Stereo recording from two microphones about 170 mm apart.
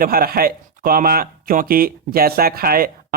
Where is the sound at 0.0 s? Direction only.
60° right (ahead or behind).